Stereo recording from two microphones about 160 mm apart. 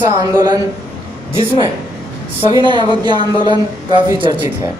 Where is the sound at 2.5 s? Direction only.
30° right (ahead or behind).